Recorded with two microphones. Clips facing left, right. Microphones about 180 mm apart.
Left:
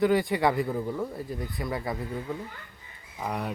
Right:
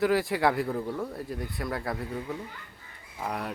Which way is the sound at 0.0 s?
Centre (ahead or behind).